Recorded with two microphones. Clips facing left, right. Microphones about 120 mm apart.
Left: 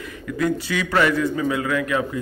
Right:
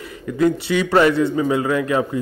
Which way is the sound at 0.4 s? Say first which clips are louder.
Right 5 dB; 30° right (ahead or behind).